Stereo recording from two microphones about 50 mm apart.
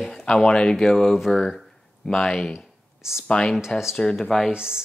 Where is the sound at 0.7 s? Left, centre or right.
Centre.